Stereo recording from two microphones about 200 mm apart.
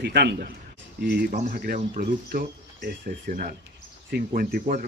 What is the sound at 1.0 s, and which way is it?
Speech, 45° right (ahead or behind).